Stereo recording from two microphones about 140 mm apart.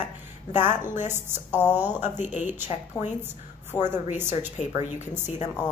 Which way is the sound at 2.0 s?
60° left (ahead or behind).